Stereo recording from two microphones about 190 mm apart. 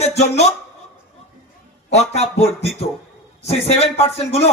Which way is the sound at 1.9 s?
35° left (ahead or behind).